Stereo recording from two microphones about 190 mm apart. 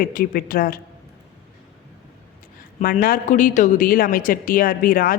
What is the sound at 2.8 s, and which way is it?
Speech, 50° left (ahead or behind).